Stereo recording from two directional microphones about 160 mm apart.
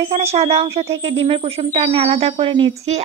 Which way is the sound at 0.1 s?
40° right (ahead or behind).